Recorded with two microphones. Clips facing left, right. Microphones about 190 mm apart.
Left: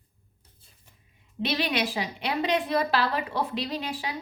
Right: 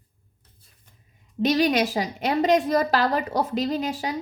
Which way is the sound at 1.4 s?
40° right (ahead or behind).